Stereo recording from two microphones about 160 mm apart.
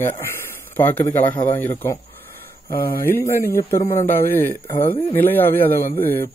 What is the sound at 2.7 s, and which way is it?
Speech, 65° left (ahead or behind).